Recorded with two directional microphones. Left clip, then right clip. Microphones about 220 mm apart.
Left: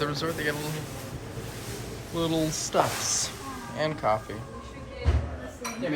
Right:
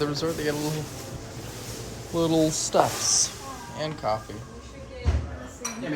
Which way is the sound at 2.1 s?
25° right (ahead or behind).